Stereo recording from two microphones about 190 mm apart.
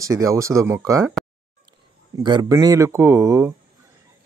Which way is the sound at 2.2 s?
20° right (ahead or behind).